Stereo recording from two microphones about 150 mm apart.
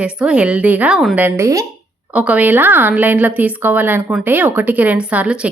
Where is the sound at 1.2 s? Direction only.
15° right (ahead or behind).